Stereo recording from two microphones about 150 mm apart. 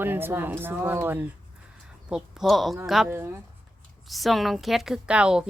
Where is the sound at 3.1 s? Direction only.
15° right (ahead or behind).